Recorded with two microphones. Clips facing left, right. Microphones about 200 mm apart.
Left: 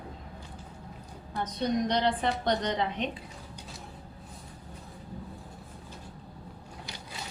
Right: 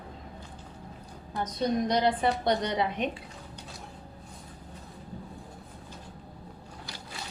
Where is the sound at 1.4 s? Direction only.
10° right (ahead or behind).